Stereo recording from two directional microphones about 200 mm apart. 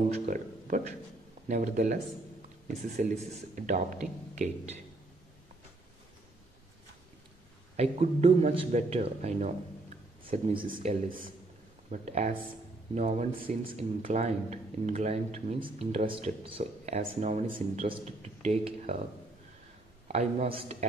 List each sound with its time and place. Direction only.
0.3 s speech: 40° right (ahead or behind)
3.0 s speech: 40° right (ahead or behind)
7.7 s speech: 30° right (ahead or behind)
20.1 s speech: 30° right (ahead or behind)